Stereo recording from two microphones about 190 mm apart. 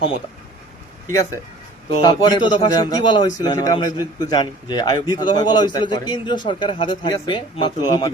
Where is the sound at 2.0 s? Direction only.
20° left (ahead or behind).